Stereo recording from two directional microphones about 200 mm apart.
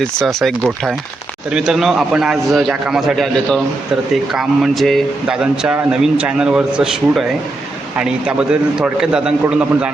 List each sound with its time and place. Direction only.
0.0 s speech: centre (ahead or behind)